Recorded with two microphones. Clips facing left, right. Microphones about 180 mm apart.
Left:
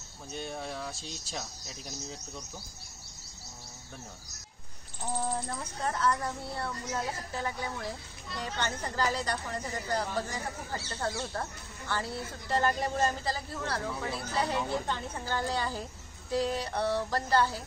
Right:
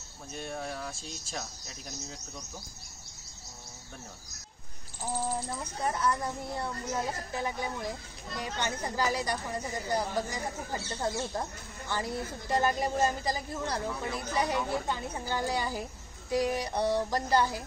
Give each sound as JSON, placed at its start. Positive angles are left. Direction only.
{"t": 0.3, "sound": "speech", "side_deg": 0}
{"t": 5.0, "sound": "speech", "side_deg": -5}